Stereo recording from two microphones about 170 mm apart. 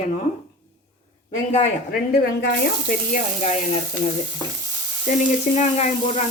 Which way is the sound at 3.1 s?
40° left (ahead or behind).